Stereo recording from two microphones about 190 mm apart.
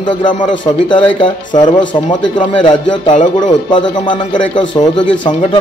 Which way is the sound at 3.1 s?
40° left (ahead or behind).